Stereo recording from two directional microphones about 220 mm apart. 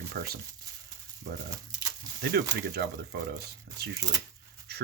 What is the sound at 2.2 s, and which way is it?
Speech, 45° right (ahead or behind).